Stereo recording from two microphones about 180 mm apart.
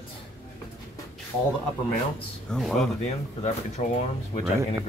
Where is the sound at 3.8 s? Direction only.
35° left (ahead or behind).